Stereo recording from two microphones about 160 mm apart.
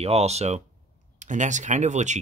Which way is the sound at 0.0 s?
40° right (ahead or behind).